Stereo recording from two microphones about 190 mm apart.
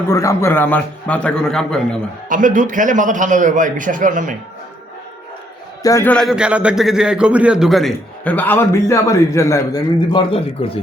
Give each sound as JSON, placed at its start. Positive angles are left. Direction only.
{"t": 0.1, "sound": "a man's voice", "side_deg": 15}
{"t": 2.3, "sound": "a man's voice", "side_deg": -45}
{"t": 5.8, "sound": "a man's voice", "side_deg": 15}